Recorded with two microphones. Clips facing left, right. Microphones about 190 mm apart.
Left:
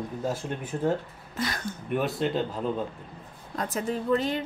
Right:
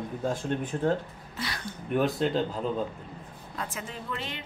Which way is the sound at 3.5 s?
40° left (ahead or behind).